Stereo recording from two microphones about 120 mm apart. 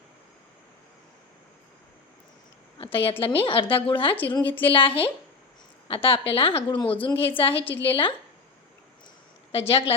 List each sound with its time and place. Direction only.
2.7 s a woman's voice: 50° left (ahead or behind)
9.5 s a woman's voice: 50° left (ahead or behind)